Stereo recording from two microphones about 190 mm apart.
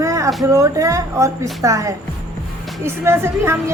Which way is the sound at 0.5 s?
15° right (ahead or behind).